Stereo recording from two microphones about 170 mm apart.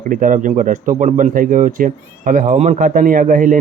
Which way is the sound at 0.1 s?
50° right (ahead or behind).